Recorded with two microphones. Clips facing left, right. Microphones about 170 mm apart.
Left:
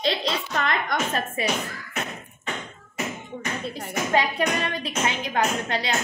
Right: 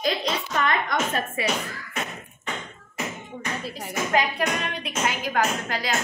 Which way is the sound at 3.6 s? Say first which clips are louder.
Left 1 dB; 5° right (ahead or behind).